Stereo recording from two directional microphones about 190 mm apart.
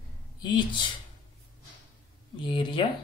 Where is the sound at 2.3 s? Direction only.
25° left (ahead or behind).